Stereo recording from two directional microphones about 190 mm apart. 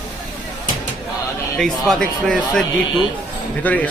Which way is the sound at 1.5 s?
5° left (ahead or behind).